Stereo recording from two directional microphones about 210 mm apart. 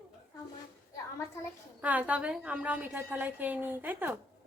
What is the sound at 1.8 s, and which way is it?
A woman's voice, 5° right (ahead or behind).